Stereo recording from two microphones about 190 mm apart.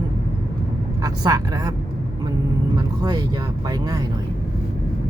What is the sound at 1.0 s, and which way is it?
Speech, 20° right (ahead or behind).